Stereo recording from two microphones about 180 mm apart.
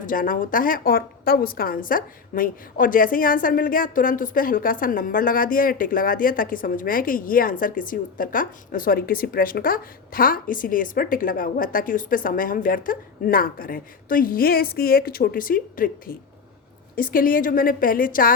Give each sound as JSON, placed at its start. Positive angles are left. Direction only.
{"t": 0.0, "sound": "a woman's voice", "side_deg": 50}